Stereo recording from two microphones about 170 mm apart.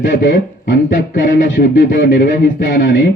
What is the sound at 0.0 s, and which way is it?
A man's voice, 55° left (ahead or behind).